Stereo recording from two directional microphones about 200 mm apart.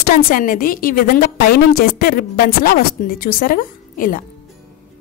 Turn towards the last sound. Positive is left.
turn(degrees=45)  # may be behind; listen again after turning